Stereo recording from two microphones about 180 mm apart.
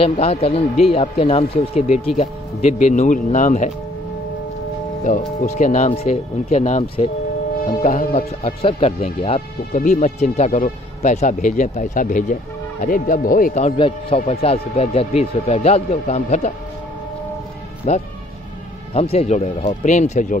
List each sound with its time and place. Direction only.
0.0 s speech: 35° left (ahead or behind)
5.0 s speech: 45° left (ahead or behind)
13.7 s speech: 30° left (ahead or behind)
17.9 s speech: 40° left (ahead or behind)